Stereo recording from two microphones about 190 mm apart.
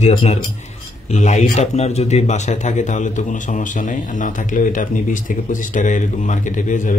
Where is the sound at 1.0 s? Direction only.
35° left (ahead or behind).